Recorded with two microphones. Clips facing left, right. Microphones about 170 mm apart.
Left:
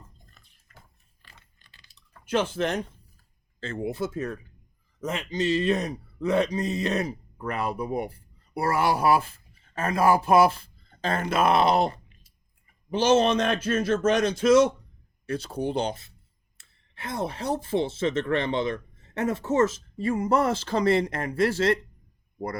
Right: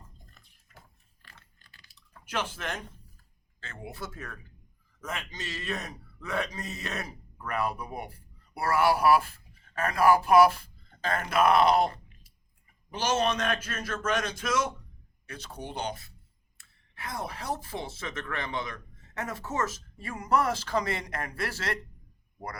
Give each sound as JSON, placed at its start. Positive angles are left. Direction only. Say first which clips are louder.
{"t": 1.2, "sound": "keys jangling", "louder": "even", "side_deg": 20}
{"t": 2.3, "sound": "speech", "louder": "left 9 dB", "side_deg": 30}